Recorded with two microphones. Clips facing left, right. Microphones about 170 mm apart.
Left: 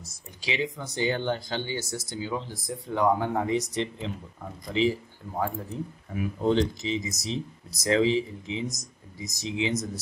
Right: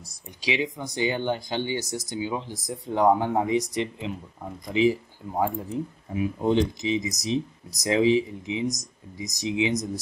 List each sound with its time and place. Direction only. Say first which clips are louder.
0.0 s speech: right 5 dB; 15° right (ahead or behind)
6.1 s speech: right 2 dB; 15° right (ahead or behind)